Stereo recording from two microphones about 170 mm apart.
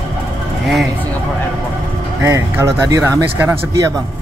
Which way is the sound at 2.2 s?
15° right (ahead or behind).